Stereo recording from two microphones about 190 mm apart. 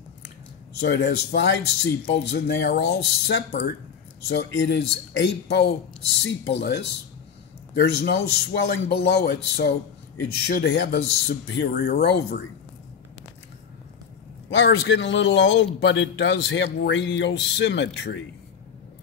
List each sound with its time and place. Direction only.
0.7 s a man's voice: 60° left (ahead or behind)
14.5 s a man's voice: 70° left (ahead or behind)